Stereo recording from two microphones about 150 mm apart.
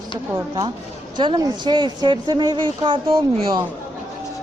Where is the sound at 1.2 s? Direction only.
30° right (ahead or behind).